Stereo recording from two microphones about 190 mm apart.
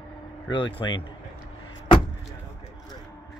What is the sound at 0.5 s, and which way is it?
Speech, 25° left (ahead or behind).